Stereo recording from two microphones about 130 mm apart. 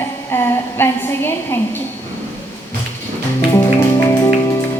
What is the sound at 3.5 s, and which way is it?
Music, 25° left (ahead or behind).